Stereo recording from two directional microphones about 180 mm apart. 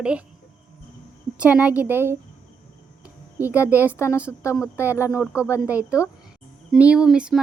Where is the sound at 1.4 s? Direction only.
5° right (ahead or behind).